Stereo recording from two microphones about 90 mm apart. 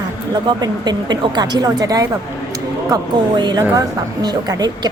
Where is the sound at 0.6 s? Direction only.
50° right (ahead or behind).